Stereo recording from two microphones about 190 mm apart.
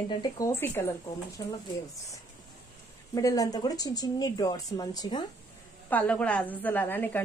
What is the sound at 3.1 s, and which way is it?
Speech, 20° left (ahead or behind).